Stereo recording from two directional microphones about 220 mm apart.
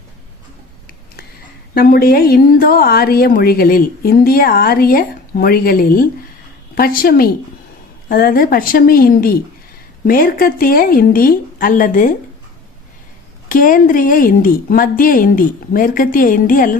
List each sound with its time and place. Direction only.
1.7 s a woman's voice: 45° left (ahead or behind)
13.5 s speech: 40° left (ahead or behind)